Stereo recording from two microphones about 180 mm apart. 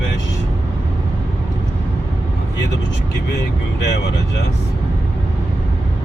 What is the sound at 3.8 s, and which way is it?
Speech, 75° left (ahead or behind).